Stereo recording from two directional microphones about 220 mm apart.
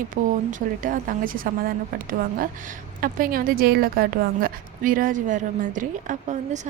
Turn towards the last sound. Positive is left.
turn(degrees=-35)  # may be behind; listen again after turning